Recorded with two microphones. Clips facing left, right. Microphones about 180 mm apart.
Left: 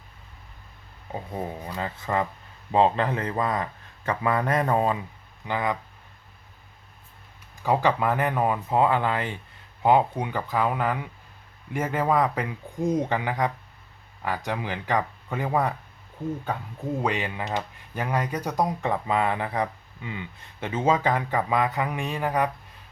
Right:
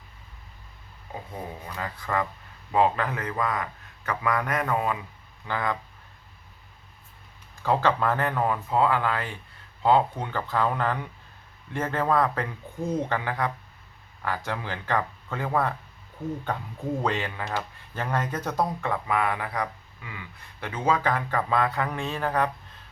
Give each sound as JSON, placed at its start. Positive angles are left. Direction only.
{"t": 1.6, "sound": "a man's voice", "side_deg": 25}
{"t": 5.5, "sound": "a man's voice", "side_deg": 20}
{"t": 7.6, "sound": "speech", "side_deg": 15}
{"t": 17.0, "sound": "speech", "side_deg": 15}